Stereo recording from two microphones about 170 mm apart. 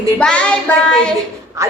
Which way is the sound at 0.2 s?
5° left (ahead or behind).